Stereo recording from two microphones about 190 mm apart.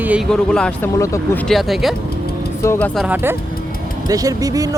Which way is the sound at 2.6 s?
10° left (ahead or behind).